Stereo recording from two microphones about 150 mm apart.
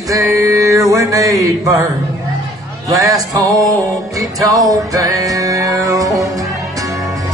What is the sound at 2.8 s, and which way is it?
Mantra, 25° right (ahead or behind).